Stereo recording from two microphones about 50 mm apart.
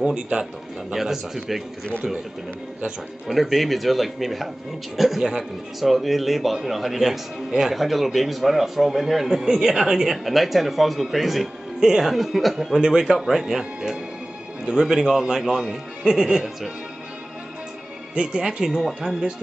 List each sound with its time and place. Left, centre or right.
0.0 s speech: centre
3.3 s a man's voice: centre
14.6 s speech: centre
18.1 s speech: centre